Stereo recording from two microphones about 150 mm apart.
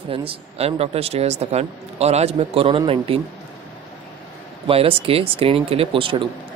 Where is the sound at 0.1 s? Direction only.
40° right (ahead or behind).